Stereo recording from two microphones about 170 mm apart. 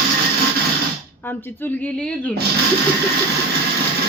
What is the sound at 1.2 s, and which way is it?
A woman's voice, 10° left (ahead or behind).